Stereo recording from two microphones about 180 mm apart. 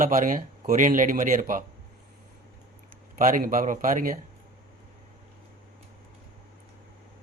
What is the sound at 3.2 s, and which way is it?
A man's voice, 50° right (ahead or behind).